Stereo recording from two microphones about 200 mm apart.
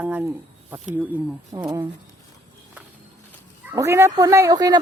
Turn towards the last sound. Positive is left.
turn(degrees=-20)  # may be behind; listen again after turning